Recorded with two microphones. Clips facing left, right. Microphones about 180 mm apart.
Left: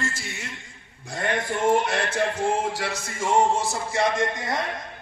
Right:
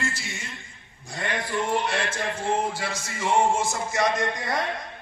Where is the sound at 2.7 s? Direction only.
65° left (ahead or behind); by 4.6 s 20° left (ahead or behind).